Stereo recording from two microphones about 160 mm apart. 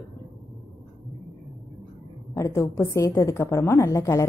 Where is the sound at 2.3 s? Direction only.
20° left (ahead or behind).